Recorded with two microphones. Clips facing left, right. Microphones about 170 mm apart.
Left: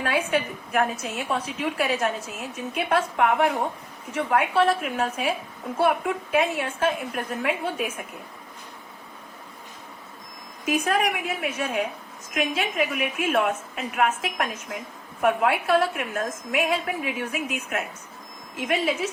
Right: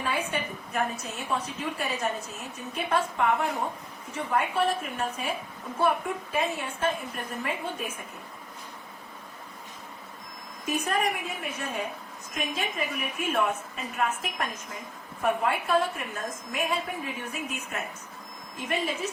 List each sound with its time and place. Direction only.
0.0 s a woman's voice: 80° left
2.7 s a woman's voice: 75° left (ahead or behind)
6.3 s a woman's voice: 85° left
10.7 s a woman's voice: 85° left